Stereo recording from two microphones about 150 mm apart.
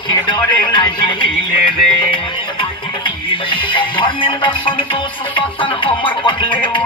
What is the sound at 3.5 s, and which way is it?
Music, 35° left (ahead or behind).